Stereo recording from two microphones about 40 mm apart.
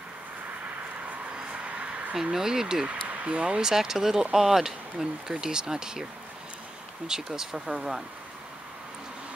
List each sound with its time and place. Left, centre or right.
1.5 s a sound: right
2.3 s speech: centre
3.1 s speech: right
3.6 s speech: centre
7.1 s speech: centre